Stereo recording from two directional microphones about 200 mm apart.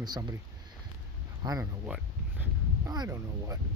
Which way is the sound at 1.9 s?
10° right (ahead or behind).